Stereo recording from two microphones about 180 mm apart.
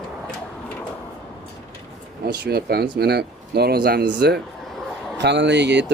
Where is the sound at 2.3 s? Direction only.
60° right (ahead or behind).